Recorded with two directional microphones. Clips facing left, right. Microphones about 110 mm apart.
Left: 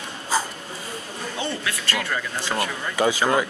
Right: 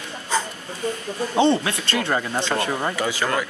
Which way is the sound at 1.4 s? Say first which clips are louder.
Right 11 dB; 25° right (ahead or behind).